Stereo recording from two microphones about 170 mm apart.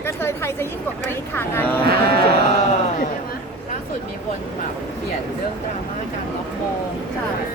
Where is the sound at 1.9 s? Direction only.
65° right (ahead or behind).